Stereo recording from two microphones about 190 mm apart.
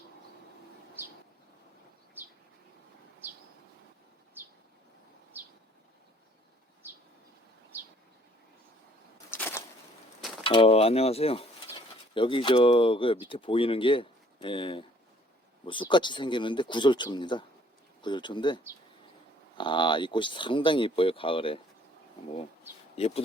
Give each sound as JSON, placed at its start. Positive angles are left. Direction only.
{"t": 2.2, "sound": "bird", "side_deg": -10}
{"t": 7.7, "sound": "bird", "side_deg": -10}
{"t": 9.1, "sound": "a sound", "side_deg": 15}
{"t": 10.4, "sound": "speech", "side_deg": 30}
{"t": 23.0, "sound": "speech", "side_deg": 30}